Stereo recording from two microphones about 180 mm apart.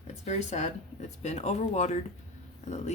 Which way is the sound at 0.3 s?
40° left (ahead or behind).